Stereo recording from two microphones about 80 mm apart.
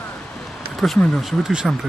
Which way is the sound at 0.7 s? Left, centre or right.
Centre.